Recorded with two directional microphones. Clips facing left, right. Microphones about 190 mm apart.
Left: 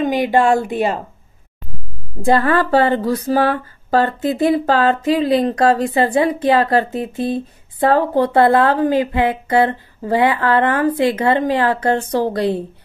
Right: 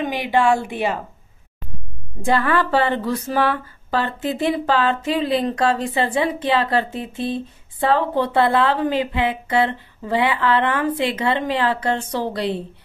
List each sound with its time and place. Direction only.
0.0 s a woman's voice: 45° left (ahead or behind)
2.2 s speech: 40° left (ahead or behind)